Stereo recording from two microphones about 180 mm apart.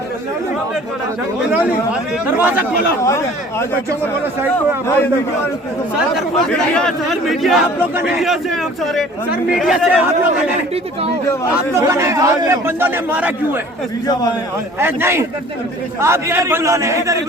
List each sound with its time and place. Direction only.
1.5 s a man's voice: 5° right (ahead or behind)
3.0 s speech: 15° left (ahead or behind)
6.1 s speech: 5° left (ahead or behind)
11.5 s a man's voice: 15° right (ahead or behind)
14.8 s a man's voice: 15° right (ahead or behind)